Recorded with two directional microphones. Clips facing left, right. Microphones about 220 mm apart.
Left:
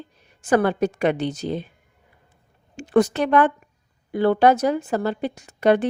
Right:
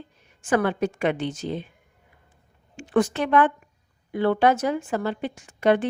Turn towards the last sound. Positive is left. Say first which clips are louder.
# left 2 dB
turn(degrees=40)  # may be behind; listen again after turning